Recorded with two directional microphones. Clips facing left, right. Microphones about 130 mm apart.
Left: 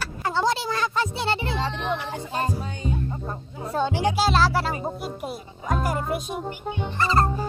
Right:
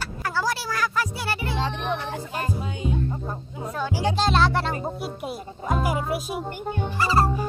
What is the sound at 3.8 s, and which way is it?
Speech, 20° left (ahead or behind).